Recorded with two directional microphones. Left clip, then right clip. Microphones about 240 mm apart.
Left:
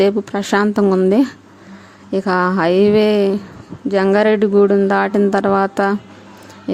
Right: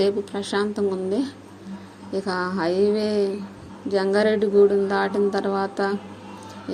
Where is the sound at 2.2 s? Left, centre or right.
Left.